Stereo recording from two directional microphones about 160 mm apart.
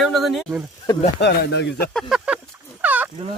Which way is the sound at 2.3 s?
10° right (ahead or behind).